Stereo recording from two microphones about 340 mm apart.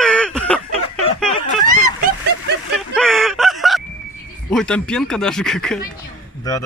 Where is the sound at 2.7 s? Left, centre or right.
Centre.